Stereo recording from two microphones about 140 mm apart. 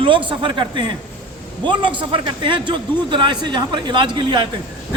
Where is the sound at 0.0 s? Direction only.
35° right (ahead or behind).